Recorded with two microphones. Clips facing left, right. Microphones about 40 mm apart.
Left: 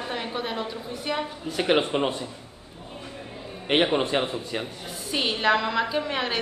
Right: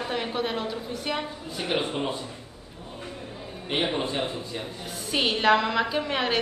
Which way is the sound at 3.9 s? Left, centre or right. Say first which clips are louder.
Left 4 dB; left.